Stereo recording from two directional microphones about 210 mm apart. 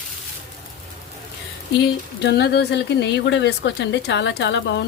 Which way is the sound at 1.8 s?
55° left (ahead or behind).